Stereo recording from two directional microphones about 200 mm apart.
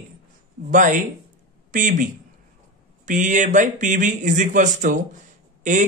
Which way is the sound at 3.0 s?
40° right (ahead or behind).